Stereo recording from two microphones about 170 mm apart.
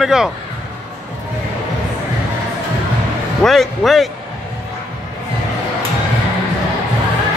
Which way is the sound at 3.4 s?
Centre (ahead or behind).